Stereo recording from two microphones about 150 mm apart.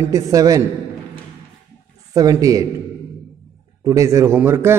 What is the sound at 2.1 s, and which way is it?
Speech, 25° right (ahead or behind).